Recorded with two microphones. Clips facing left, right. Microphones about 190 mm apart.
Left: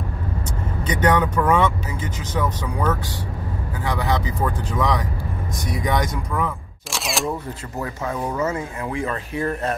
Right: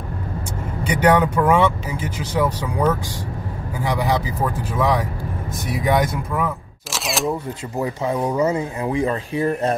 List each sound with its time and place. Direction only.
0.8 s speech: 10° right (ahead or behind)
7.8 s speech: 20° right (ahead or behind)